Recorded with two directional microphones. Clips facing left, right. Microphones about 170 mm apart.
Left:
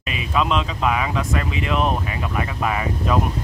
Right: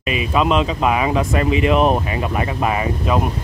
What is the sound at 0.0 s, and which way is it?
Speech, 5° right (ahead or behind).